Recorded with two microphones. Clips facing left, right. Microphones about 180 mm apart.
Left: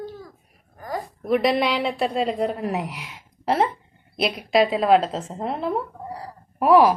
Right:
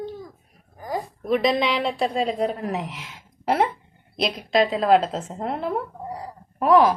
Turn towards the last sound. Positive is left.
turn(degrees=5)  # may be behind; listen again after turning